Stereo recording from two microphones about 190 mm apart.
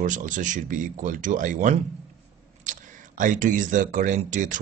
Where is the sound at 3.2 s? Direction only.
45° right (ahead or behind).